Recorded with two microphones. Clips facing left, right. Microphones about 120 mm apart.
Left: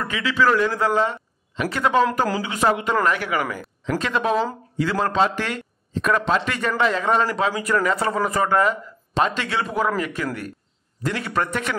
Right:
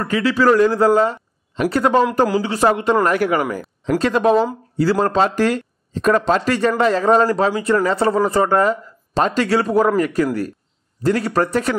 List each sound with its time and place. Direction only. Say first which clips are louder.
0.0 s speech: right 5 dB; 40° right (ahead or behind)